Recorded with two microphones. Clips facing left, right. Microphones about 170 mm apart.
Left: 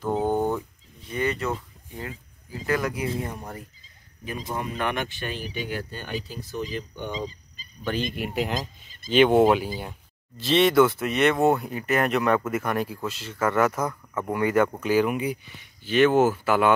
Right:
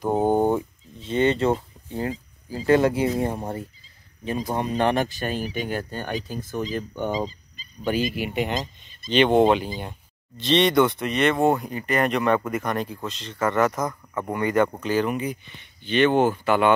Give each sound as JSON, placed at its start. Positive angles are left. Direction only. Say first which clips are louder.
{"t": 0.3, "sound": "a sound", "louder": "right 4 dB", "side_deg": -20}
{"t": 4.2, "sound": "speech", "louder": "right 5 dB", "side_deg": -25}
{"t": 7.8, "sound": "speech", "louder": "right 4 dB", "side_deg": -10}